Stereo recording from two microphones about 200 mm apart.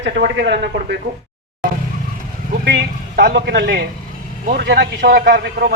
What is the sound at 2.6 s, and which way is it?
A man's voice, 55° right (ahead or behind).